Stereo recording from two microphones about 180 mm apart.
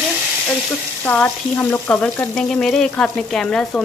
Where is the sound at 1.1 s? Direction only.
10° left (ahead or behind).